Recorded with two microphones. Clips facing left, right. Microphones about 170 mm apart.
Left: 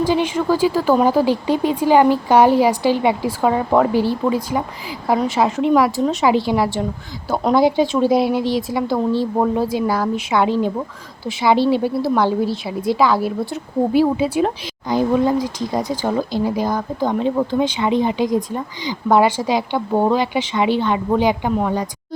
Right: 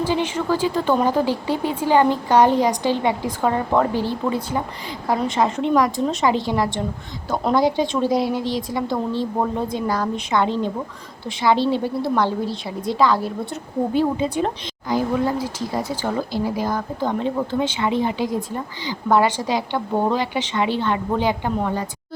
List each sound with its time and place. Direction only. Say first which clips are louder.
0.0 s speech: left 4 dB; 10° left (ahead or behind)
14.8 s speech: left 4 dB; 20° left (ahead or behind)